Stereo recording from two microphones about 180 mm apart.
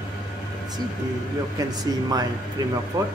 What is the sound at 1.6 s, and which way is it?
Speech, 20° right (ahead or behind).